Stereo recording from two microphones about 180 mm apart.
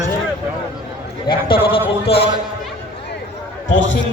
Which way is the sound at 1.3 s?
30° left (ahead or behind).